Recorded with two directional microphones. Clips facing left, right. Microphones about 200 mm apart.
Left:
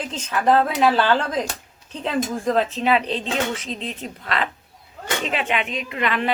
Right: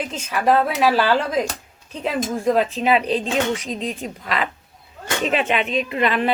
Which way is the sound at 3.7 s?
45° right (ahead or behind).